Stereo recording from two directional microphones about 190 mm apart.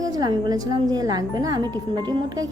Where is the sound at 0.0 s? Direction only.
20° right (ahead or behind).